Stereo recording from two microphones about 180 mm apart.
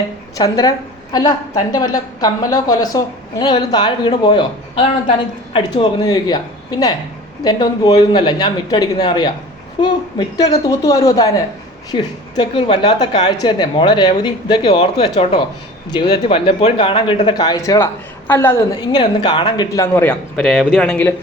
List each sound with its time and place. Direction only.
0.3 s speech: 20° left (ahead or behind)
5.5 s speech: 20° left (ahead or behind); by 20.7 s centre (ahead or behind)
20.7 s speech: 10° left (ahead or behind)